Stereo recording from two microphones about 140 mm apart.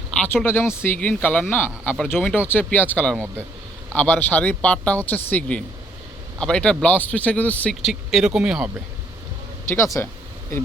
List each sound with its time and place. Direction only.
0.4 s speech: 15° left (ahead or behind); by 8.7 s 5° right (ahead or behind)
9.6 s speech: 20° left (ahead or behind)